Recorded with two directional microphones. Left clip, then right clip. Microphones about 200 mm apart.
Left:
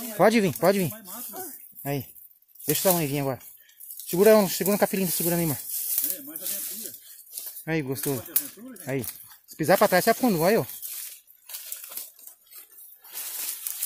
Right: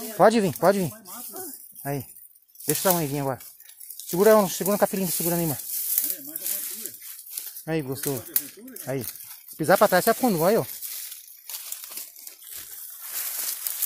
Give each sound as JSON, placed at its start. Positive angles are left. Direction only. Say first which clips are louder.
{"t": 0.2, "sound": "speech", "louder": "right 2 dB", "side_deg": 5}
{"t": 7.6, "sound": "speech", "louder": "even", "side_deg": 10}
{"t": 9.6, "sound": "speech", "louder": "right 1 dB", "side_deg": 5}